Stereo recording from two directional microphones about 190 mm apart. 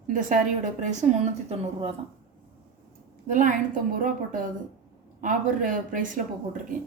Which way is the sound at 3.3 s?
40° right (ahead or behind).